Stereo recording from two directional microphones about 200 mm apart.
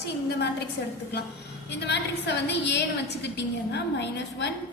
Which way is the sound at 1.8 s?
60° left (ahead or behind).